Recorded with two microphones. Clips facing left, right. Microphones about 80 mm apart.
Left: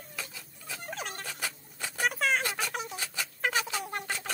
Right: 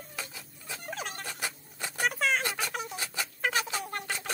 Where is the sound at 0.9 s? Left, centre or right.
Centre.